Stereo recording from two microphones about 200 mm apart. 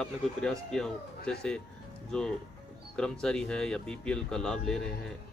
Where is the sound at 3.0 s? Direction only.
5° left (ahead or behind).